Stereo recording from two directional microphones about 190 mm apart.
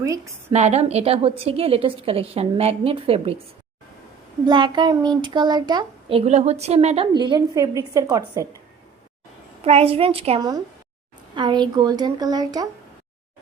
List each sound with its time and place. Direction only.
0.5 s a woman's voice: 35° right (ahead or behind)
4.4 s a child's voice: 25° right (ahead or behind)
9.6 s a woman's voice: 30° right (ahead or behind)